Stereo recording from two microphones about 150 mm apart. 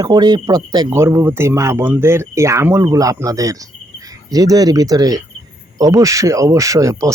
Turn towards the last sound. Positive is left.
turn(degrees=-20)  # may be behind; listen again after turning